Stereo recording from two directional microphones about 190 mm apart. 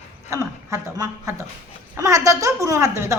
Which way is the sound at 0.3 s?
15° right (ahead or behind).